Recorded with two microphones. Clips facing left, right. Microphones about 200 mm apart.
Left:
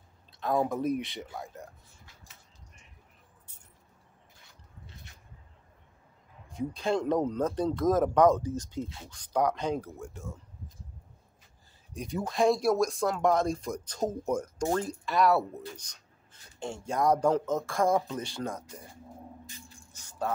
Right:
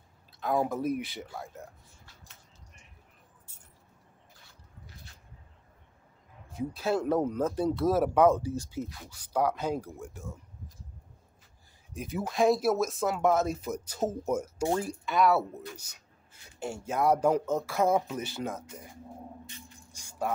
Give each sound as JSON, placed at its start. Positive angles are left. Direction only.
{"t": 0.4, "sound": "speech", "side_deg": 0}
{"t": 6.5, "sound": "speech", "side_deg": -5}
{"t": 8.8, "sound": "speech", "side_deg": 25}
{"t": 9.1, "sound": "speech", "side_deg": -5}
{"t": 11.9, "sound": "speech", "side_deg": -5}
{"t": 19.9, "sound": "music", "side_deg": -10}